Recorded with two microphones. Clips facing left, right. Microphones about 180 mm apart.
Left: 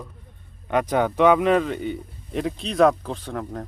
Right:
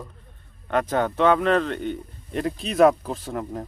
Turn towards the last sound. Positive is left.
turn(degrees=-5)  # may be behind; listen again after turning